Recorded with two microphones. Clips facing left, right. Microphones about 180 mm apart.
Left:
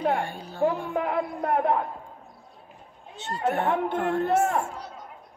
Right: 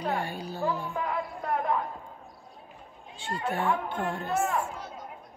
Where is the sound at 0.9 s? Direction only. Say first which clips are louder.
Left 5 dB; 60° left (ahead or behind).